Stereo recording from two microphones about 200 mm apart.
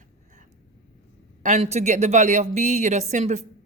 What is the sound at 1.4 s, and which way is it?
A woman's voice, 35° right (ahead or behind).